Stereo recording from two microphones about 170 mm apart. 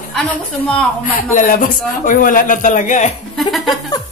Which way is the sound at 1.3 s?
50° left (ahead or behind).